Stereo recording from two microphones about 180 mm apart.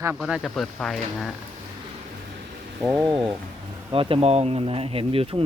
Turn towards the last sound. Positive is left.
turn(degrees=-30)  # may be behind; listen again after turning